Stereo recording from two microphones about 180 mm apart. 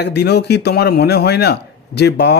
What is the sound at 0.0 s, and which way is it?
Speech, 70° left (ahead or behind).